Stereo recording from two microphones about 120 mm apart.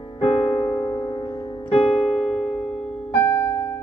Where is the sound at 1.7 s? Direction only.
60° left (ahead or behind).